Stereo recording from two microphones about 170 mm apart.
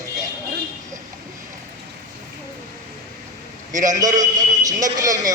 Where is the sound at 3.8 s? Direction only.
20° right (ahead or behind).